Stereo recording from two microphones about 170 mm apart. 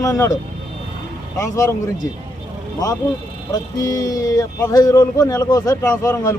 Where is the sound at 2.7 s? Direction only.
20° left (ahead or behind).